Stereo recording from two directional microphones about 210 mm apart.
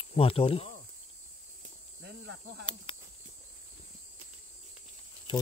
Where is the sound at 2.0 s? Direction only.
55° right (ahead or behind).